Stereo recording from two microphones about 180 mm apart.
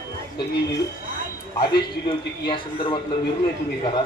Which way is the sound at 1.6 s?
25° left (ahead or behind).